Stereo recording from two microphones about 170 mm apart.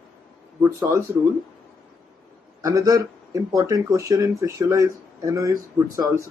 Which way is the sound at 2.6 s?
20° right (ahead or behind).